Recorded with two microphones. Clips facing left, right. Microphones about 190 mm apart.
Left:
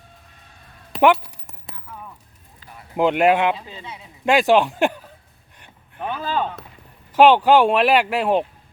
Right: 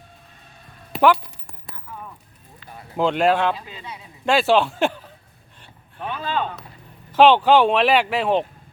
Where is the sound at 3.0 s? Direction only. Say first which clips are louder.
Left 2 dB; 15° left (ahead or behind).